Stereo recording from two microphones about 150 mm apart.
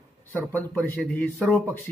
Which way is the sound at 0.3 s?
15° left (ahead or behind).